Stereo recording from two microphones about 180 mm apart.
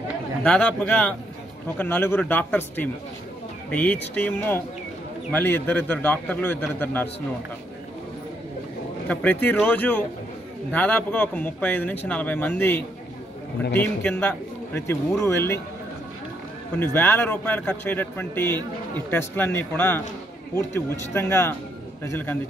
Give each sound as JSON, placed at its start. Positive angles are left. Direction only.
{"t": 0.4, "sound": "speech", "side_deg": 10}
{"t": 9.1, "sound": "speech", "side_deg": 10}
{"t": 16.8, "sound": "speech", "side_deg": 10}